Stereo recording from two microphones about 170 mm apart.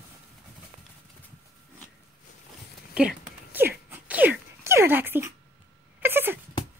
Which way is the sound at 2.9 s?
5° right (ahead or behind).